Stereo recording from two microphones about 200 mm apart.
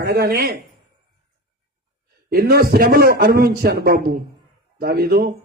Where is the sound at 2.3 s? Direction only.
50° right (ahead or behind).